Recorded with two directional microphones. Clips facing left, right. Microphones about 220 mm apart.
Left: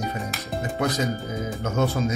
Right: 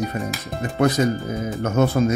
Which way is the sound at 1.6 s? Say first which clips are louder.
Right 6 dB; 60° right (ahead or behind).